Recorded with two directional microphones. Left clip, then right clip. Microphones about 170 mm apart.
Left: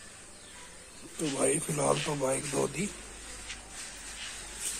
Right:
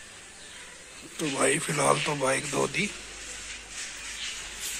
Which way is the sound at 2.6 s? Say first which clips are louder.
Right 3 dB; centre (ahead or behind).